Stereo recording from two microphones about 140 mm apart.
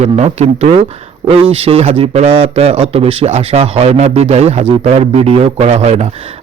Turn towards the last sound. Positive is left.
turn(degrees=-50)  # may be behind; listen again after turning